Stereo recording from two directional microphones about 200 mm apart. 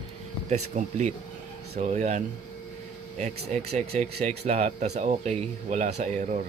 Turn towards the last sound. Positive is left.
turn(degrees=-35)  # may be behind; listen again after turning